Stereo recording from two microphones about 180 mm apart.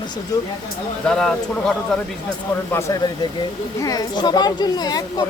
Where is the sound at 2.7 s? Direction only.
15° left (ahead or behind).